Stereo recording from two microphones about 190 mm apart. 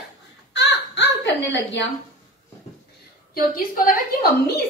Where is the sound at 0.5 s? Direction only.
70° left (ahead or behind).